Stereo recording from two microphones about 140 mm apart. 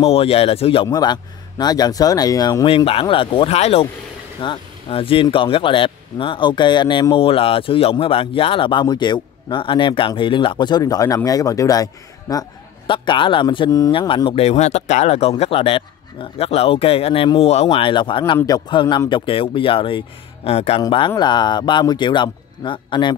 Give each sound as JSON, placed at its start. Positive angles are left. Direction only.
{"t": 0.0, "sound": "speech", "side_deg": 45}
{"t": 0.8, "sound": "speech", "side_deg": 30}
{"t": 2.7, "sound": "speech", "side_deg": 40}
{"t": 4.4, "sound": "speech", "side_deg": 40}
{"t": 20.8, "sound": "speech", "side_deg": 35}